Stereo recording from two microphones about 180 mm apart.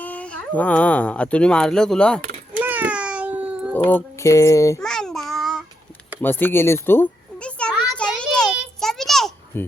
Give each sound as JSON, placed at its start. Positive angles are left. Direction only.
{"t": 0.0, "sound": "speech", "side_deg": 10}
{"t": 2.5, "sound": "a sound", "side_deg": -10}
{"t": 3.8, "sound": "speech", "side_deg": 15}
{"t": 4.8, "sound": "child singing", "side_deg": 5}
{"t": 6.2, "sound": "children playing", "side_deg": 10}
{"t": 8.4, "sound": "a sound", "side_deg": 0}
{"t": 9.5, "sound": "speech", "side_deg": 10}